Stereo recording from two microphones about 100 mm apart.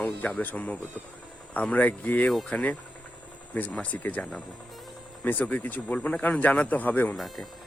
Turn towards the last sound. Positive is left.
turn(degrees=20)  # may be behind; listen again after turning